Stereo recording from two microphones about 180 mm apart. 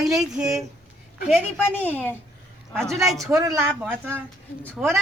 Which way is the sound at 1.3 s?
10° left (ahead or behind).